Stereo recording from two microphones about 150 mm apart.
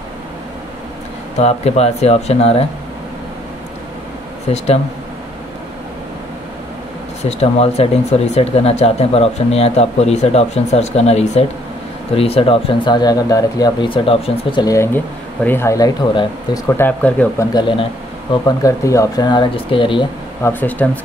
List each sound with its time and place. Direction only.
1.4 s speech: 45° left (ahead or behind)
7.2 s speech: 45° left (ahead or behind)
14.7 s speech: 20° left (ahead or behind)
16.8 s speech: 10° left (ahead or behind)
17.4 s speech: 30° left (ahead or behind)
20.4 s speech: 10° left (ahead or behind)